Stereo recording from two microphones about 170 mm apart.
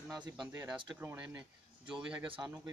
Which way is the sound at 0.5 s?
15° right (ahead or behind).